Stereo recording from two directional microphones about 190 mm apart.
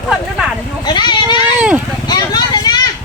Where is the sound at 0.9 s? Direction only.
25° left (ahead or behind).